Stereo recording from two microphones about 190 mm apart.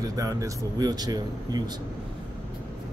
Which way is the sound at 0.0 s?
20° right (ahead or behind).